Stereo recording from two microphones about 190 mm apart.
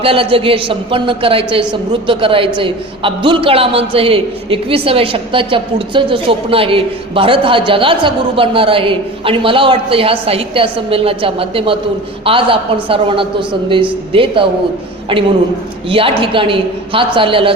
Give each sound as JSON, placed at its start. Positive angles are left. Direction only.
{"t": 0.0, "sound": "a woman's voice", "side_deg": -30}
{"t": 15.9, "sound": "a woman's voice", "side_deg": -30}